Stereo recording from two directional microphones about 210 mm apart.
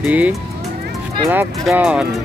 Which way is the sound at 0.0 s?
5° right (ahead or behind).